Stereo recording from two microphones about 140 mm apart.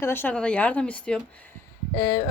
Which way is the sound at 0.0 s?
15° left (ahead or behind).